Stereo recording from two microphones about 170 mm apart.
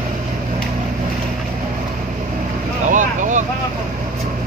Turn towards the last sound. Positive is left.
turn(degrees=-45)  # may be behind; listen again after turning